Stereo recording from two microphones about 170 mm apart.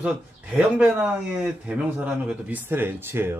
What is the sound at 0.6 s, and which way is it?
A man's voice, 5° right (ahead or behind).